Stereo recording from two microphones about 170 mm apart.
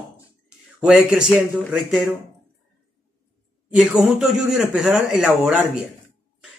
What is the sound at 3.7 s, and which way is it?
A man's voice, 5° right (ahead or behind).